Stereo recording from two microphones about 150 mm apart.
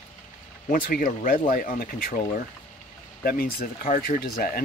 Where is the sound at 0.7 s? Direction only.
65° left (ahead or behind).